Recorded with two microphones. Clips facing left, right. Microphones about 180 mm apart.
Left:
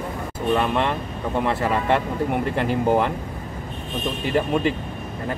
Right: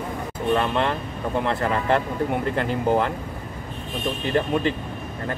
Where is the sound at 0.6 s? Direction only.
5° left (ahead or behind).